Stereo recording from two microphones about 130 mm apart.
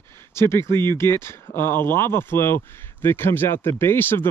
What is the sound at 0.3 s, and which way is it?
Speech, 20° left (ahead or behind).